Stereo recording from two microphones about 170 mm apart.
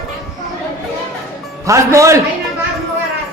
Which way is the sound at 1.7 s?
15° right (ahead or behind).